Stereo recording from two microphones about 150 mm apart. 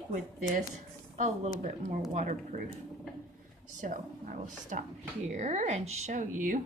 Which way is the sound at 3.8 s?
60° right (ahead or behind).